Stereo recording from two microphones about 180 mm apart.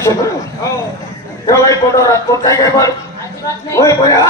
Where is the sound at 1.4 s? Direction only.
15° left (ahead or behind).